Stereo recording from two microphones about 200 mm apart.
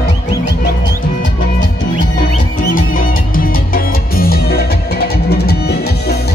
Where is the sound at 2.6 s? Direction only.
45° left (ahead or behind).